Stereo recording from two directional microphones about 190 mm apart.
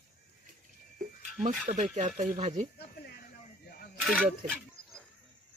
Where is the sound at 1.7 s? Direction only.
40° right (ahead or behind).